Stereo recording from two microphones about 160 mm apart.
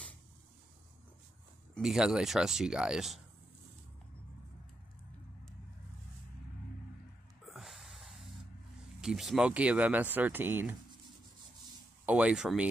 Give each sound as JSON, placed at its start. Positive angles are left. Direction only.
{"t": 1.8, "sound": "speech", "side_deg": -5}
{"t": 7.4, "sound": "snort", "side_deg": 0}
{"t": 9.0, "sound": "speech", "side_deg": 0}
{"t": 12.1, "sound": "speech", "side_deg": -5}